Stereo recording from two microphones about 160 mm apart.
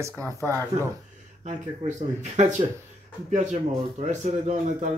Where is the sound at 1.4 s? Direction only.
50° right (ahead or behind).